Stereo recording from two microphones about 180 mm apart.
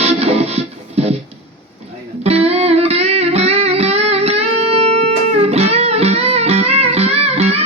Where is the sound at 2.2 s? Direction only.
35° right (ahead or behind).